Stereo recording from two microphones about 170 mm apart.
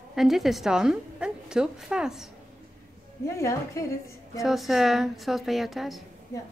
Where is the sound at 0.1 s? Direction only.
Centre (ahead or behind).